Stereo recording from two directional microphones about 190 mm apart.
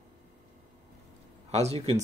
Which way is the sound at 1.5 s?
35° right (ahead or behind).